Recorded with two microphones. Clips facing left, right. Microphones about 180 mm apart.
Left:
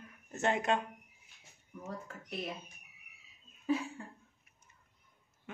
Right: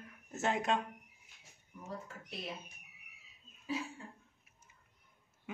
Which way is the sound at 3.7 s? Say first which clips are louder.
Left 6 dB; 55° left (ahead or behind).